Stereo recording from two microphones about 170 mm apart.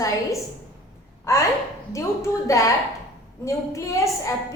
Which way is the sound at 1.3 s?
15° left (ahead or behind).